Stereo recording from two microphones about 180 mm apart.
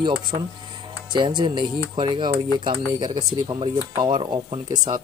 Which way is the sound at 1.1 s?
25° right (ahead or behind).